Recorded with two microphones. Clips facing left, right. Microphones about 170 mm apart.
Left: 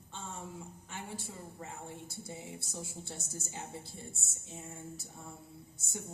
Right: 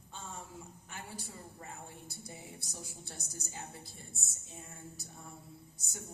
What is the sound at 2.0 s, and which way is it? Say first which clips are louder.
A woman's voice: left 4 dB; 25° left (ahead or behind).